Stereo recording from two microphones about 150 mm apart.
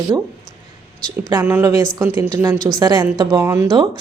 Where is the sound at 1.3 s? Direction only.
15° right (ahead or behind).